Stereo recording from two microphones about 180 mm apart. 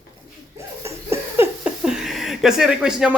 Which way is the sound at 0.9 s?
15° right (ahead or behind).